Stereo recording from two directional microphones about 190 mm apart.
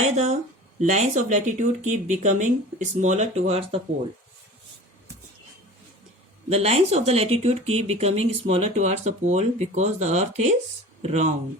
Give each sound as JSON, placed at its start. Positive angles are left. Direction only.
{"t": 0.0, "sound": "speech", "side_deg": -35}
{"t": 6.5, "sound": "speech", "side_deg": -30}